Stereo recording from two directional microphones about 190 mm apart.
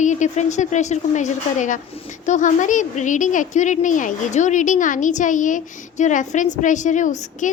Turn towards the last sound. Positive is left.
turn(degrees=40)  # may be behind; listen again after turning